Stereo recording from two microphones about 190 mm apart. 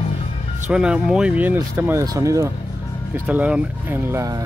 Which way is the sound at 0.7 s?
5° right (ahead or behind).